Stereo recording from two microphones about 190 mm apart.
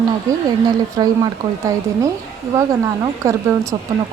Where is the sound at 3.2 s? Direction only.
15° right (ahead or behind).